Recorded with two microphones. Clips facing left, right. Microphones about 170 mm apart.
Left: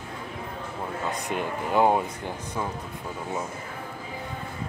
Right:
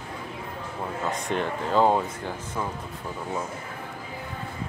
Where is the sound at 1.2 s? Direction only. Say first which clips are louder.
Right 2 dB; 10° left (ahead or behind).